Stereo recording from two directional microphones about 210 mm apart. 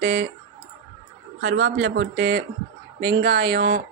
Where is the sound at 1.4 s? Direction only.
55° right (ahead or behind).